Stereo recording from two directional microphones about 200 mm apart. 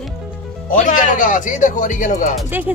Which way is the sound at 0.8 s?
40° left (ahead or behind).